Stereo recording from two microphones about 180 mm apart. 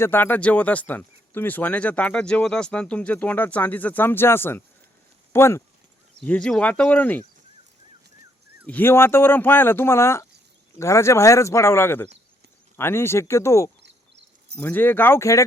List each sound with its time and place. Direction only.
0.0 s speech: 10° left (ahead or behind)
8.6 s speech: 10° left (ahead or behind)
13.8 s a sound: 75° right (ahead or behind)
14.5 s speech: 10° left (ahead or behind)